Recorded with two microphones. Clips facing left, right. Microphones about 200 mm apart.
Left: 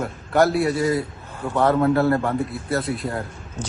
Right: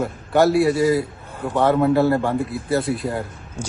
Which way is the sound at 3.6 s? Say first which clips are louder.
Right 1 dB; 10° right (ahead or behind).